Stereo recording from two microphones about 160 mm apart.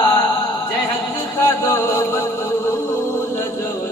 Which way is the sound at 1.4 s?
20° left (ahead or behind).